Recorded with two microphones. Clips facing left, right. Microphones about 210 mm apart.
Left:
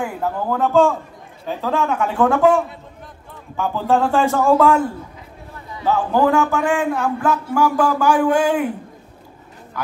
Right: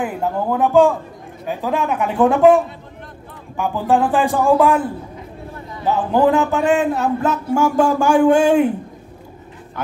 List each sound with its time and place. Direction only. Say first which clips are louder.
0.0 s a man's voice: right 2 dB; 15° right (ahead or behind)
5.9 s speech: right 1 dB; 15° right (ahead or behind)